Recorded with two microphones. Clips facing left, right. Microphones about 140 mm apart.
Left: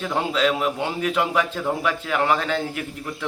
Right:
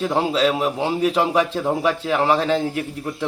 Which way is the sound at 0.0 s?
30° right (ahead or behind).